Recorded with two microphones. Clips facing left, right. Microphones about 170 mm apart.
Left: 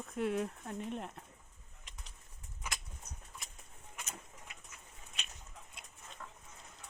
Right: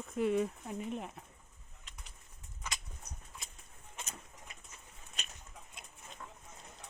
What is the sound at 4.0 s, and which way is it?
Bird, 25° right (ahead or behind).